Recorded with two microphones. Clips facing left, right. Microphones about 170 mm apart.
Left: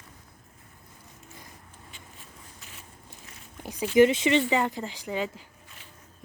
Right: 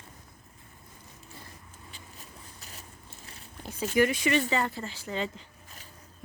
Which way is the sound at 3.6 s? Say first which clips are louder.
Left 2 dB; 15° left (ahead or behind).